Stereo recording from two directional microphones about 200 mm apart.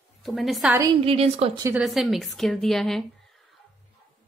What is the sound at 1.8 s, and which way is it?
Speech, centre (ahead or behind).